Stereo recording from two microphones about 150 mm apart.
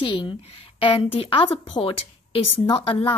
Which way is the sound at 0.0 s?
35° left (ahead or behind).